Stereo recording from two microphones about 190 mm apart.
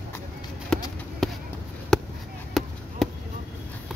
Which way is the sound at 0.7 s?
5° left (ahead or behind).